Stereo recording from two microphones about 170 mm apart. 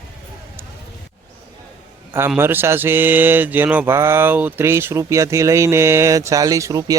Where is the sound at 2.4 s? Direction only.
15° right (ahead or behind).